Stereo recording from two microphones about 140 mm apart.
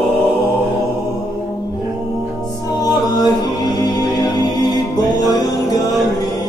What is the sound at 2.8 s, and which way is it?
Music, 30° left (ahead or behind).